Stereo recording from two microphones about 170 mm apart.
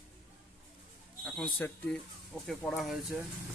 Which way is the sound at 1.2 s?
Centre (ahead or behind).